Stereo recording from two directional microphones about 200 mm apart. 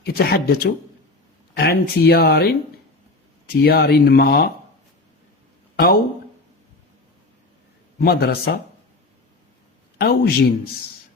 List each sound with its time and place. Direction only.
0.0 s speech: 50° left (ahead or behind)
3.5 s speech: 50° left (ahead or behind)
5.7 s speech: 50° left (ahead or behind)
7.9 s speech: 50° left (ahead or behind)
10.0 s speech: 50° left (ahead or behind)